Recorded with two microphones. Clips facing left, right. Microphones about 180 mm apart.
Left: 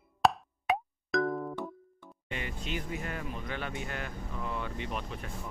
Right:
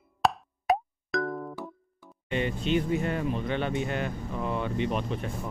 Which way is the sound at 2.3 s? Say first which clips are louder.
Right 11 dB; 25° right (ahead or behind).